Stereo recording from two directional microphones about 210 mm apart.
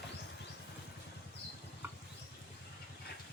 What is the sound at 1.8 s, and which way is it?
Rodents, 10° right (ahead or behind).